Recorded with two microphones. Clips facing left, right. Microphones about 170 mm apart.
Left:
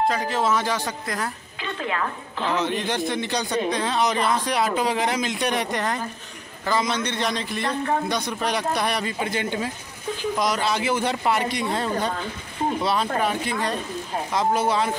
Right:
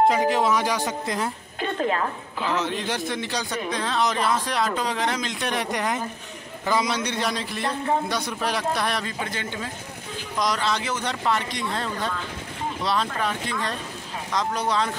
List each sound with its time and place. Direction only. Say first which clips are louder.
0.1 s speech: right 2 dB; 15° right (ahead or behind)
1.6 s a woman's voice: right 3 dB; 45° right (ahead or behind)
2.4 s a man's voice: left 2 dB; 5° right (ahead or behind)
5.7 s a man's voice: even; 10° right (ahead or behind); by 14.9 s 5° left (ahead or behind)